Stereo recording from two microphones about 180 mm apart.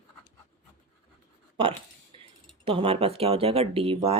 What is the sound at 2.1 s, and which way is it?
Keys jangling, 30° right (ahead or behind).